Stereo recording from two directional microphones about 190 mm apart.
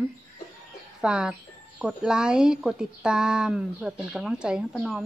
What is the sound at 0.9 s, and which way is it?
Speech, 5° right (ahead or behind).